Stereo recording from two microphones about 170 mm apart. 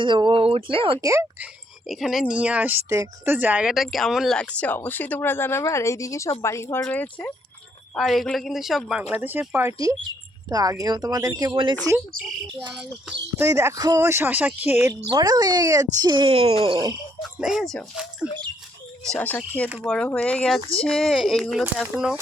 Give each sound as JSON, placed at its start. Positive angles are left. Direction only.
{"t": 0.0, "sound": "speech", "side_deg": -30}
{"t": 1.0, "sound": "speech", "side_deg": -15}
{"t": 1.9, "sound": "a woman's voice", "side_deg": 0}
{"t": 12.7, "sound": "a woman's voice", "side_deg": -5}
{"t": 13.4, "sound": "speech", "side_deg": -15}
{"t": 17.2, "sound": "a woman's voice", "side_deg": 0}